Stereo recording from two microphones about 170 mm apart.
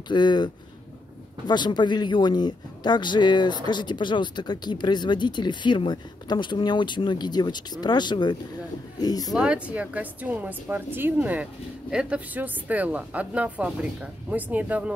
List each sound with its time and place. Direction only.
0.1 s speech: 25° left (ahead or behind)
1.5 s speech: 25° left (ahead or behind)
9.3 s a woman's voice: 5° right (ahead or behind)